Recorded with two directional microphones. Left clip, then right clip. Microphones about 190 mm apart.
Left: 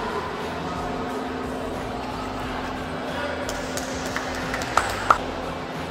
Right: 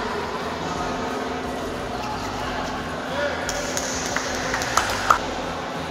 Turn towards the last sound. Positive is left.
turn(degrees=-55)  # may be behind; listen again after turning